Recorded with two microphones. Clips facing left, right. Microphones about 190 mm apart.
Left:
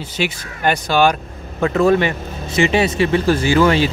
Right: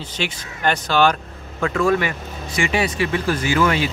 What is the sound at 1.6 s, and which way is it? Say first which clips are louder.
Speech: left 5 dB; 25° left (ahead or behind).